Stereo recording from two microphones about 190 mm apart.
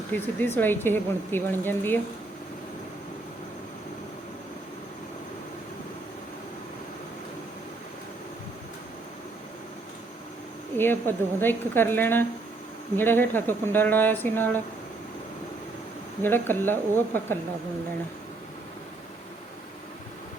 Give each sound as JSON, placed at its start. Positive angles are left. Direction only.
{"t": 0.1, "sound": "speech", "side_deg": 10}
{"t": 10.8, "sound": "speech", "side_deg": 10}
{"t": 16.2, "sound": "speech", "side_deg": 10}